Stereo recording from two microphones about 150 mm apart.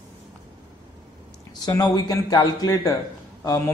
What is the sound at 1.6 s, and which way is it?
Speech, 25° left (ahead or behind).